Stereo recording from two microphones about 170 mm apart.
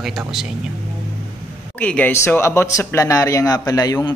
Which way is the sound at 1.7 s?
10° left (ahead or behind).